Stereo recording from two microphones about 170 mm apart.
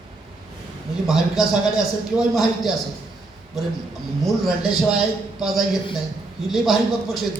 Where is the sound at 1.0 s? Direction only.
Centre (ahead or behind).